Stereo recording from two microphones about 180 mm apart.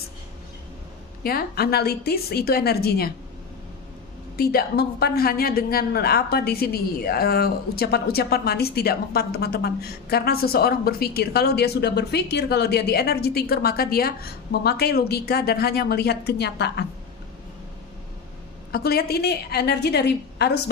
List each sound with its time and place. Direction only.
1.2 s a woman's voice: 55° left (ahead or behind)
4.4 s a woman's voice: 60° left (ahead or behind)
18.7 s a woman's voice: 60° left (ahead or behind)